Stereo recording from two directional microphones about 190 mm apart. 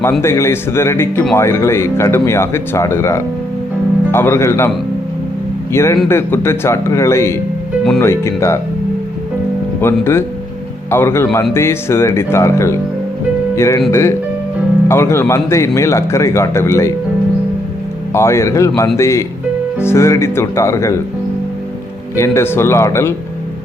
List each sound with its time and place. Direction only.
0.2 s speech: 15° left (ahead or behind)
5.7 s speech: 15° left (ahead or behind)
9.8 s speech: 15° left (ahead or behind)
14.8 s speech: 15° left (ahead or behind)
18.1 s speech: 15° left (ahead or behind)
22.1 s speech: 15° left (ahead or behind)